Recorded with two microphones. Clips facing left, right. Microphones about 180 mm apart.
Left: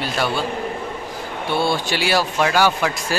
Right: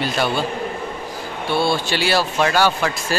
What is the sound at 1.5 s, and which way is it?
Speech, 15° left (ahead or behind).